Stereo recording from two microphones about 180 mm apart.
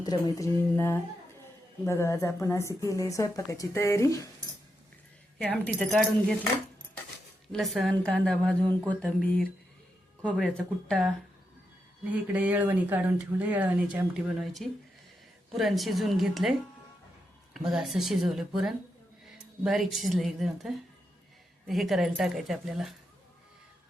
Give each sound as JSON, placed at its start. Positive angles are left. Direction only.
{"t": 0.0, "sound": "a woman's voice", "side_deg": 20}
{"t": 5.4, "sound": "speech", "side_deg": 5}
{"t": 7.5, "sound": "a woman's voice", "side_deg": 0}
{"t": 12.0, "sound": "speech", "side_deg": -10}
{"t": 17.7, "sound": "speech", "side_deg": 0}